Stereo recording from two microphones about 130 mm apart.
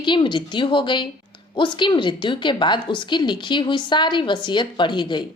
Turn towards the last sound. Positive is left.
turn(degrees=35)  # may be behind; listen again after turning